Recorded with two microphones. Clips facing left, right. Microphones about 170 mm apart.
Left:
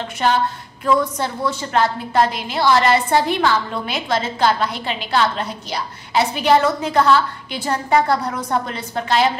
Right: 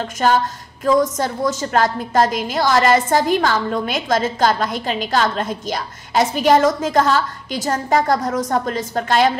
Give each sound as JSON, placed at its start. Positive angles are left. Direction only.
{"t": 0.0, "sound": "a woman's voice", "side_deg": -45}